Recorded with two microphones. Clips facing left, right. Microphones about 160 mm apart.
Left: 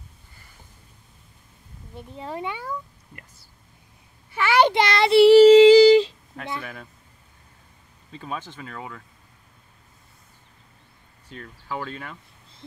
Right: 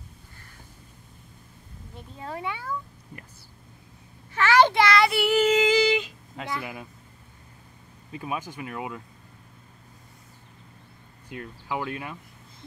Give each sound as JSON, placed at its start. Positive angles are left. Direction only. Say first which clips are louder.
{"t": 2.1, "sound": "speech", "louder": "left 2 dB", "side_deg": 20}
{"t": 4.3, "sound": "child singing", "louder": "left 1 dB", "side_deg": 10}
{"t": 6.6, "sound": "speech", "louder": "right 1 dB", "side_deg": -15}
{"t": 8.1, "sound": "speech", "louder": "right 1 dB", "side_deg": -15}
{"t": 11.2, "sound": "speech", "louder": "right 1 dB", "side_deg": -15}